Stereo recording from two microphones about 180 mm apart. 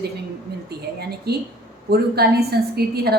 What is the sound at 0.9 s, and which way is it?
A woman's voice, 65° right (ahead or behind).